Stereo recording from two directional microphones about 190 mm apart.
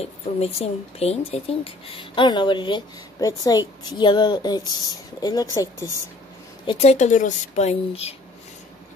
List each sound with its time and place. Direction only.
0.0 s speech: 30° left (ahead or behind); by 5.9 s 15° left (ahead or behind)
6.6 s speech: 30° left (ahead or behind)